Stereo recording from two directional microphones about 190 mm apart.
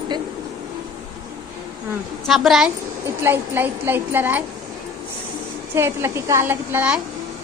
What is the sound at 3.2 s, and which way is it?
A woman's voice, 10° right (ahead or behind).